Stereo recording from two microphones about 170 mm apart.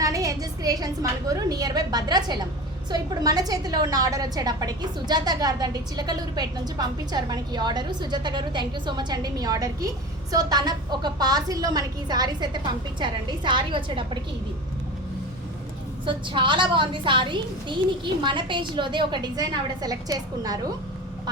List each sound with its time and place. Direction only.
0.0 s a woman's voice: 20° right (ahead or behind)
16.0 s a woman's voice: 30° right (ahead or behind)